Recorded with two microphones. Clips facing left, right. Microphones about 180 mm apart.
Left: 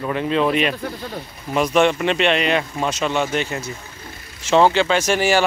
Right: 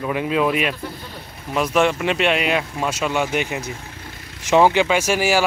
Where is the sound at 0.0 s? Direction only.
10° right (ahead or behind).